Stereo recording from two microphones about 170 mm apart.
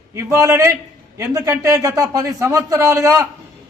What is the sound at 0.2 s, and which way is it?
A man's voice, 20° right (ahead or behind).